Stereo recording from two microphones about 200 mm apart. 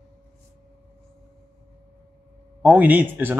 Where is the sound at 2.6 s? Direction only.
10° right (ahead or behind).